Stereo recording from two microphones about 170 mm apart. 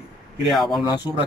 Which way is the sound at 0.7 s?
25° left (ahead or behind).